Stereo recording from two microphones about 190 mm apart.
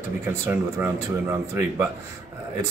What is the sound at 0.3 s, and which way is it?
Speech, 10° right (ahead or behind).